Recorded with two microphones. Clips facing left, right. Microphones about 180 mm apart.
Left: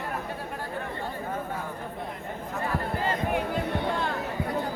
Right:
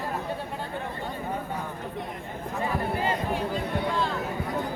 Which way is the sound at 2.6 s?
15° right (ahead or behind).